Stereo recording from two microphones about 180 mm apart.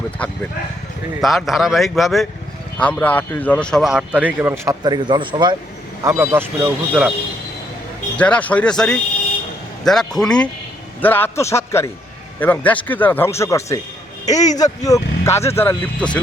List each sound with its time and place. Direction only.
1.2 s a man's voice: centre (ahead or behind); by 5.5 s 25° right (ahead or behind)
6.0 s speech: 15° right (ahead or behind)
8.1 s a man's voice: 5° left (ahead or behind)